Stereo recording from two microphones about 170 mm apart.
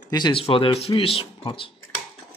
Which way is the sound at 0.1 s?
30° left (ahead or behind).